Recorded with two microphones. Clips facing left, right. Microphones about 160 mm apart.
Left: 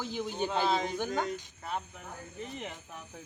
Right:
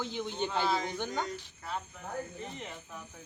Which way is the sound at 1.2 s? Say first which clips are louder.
Left 3 dB; 20° left (ahead or behind).